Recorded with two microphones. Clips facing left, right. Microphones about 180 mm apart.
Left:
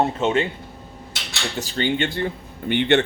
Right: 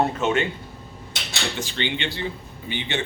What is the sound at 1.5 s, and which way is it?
Speech, 40° left (ahead or behind).